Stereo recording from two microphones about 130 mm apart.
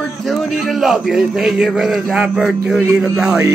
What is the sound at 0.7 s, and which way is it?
Speech, centre (ahead or behind).